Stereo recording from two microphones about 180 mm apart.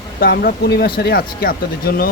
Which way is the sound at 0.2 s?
55° left (ahead or behind).